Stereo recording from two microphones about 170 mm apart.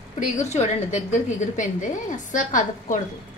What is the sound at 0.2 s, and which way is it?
A woman's voice, 40° left (ahead or behind).